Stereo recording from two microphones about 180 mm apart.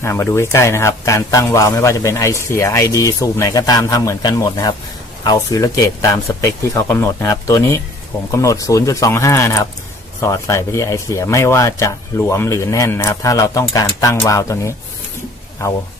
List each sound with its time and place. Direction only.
0.0 s a man's voice: 15° left (ahead or behind)